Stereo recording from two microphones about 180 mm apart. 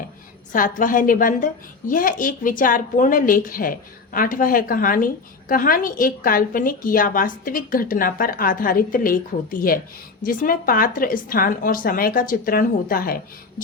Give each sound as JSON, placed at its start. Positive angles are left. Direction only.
{"t": 0.8, "sound": "speech", "side_deg": 50}